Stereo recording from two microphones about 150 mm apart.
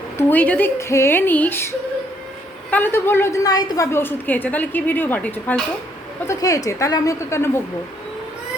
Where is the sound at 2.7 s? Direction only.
15° left (ahead or behind).